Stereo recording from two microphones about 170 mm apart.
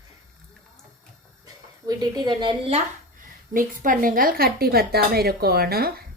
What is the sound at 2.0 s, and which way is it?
Speech, 25° right (ahead or behind).